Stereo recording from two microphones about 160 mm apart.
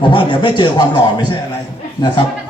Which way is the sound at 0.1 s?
30° left (ahead or behind).